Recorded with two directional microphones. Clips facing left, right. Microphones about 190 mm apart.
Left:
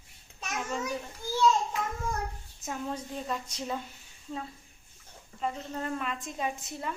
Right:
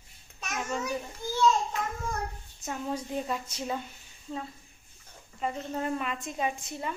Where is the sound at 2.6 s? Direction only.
10° right (ahead or behind).